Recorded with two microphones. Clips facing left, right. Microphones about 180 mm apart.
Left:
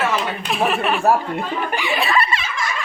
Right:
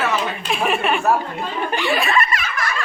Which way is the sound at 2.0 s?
30° left (ahead or behind).